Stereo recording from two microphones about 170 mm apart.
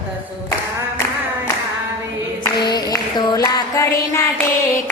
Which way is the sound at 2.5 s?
25° left (ahead or behind).